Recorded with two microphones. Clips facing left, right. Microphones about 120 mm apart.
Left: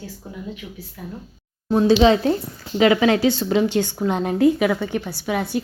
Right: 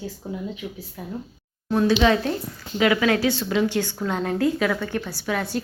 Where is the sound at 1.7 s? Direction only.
25° left (ahead or behind).